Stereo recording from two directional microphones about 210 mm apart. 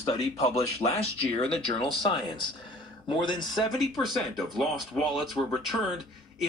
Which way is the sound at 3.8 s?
Centre (ahead or behind).